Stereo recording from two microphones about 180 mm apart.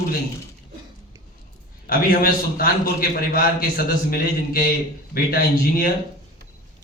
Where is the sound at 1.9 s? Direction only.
55° left (ahead or behind).